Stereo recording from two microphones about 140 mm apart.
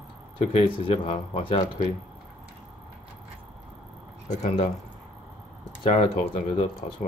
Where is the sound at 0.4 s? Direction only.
40° left (ahead or behind).